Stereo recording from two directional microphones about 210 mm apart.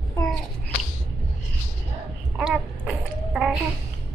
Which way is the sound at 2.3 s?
5° right (ahead or behind).